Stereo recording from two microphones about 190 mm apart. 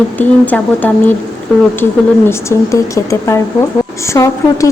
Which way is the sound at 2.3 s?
15° left (ahead or behind).